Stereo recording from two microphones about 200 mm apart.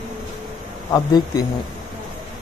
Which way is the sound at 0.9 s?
20° left (ahead or behind).